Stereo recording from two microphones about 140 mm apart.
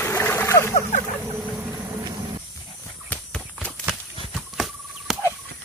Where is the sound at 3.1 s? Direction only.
10° left (ahead or behind).